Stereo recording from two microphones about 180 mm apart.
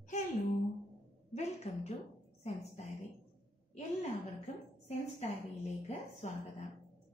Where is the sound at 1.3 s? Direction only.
40° left (ahead or behind).